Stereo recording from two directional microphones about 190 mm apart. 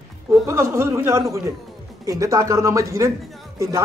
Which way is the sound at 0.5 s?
15° right (ahead or behind).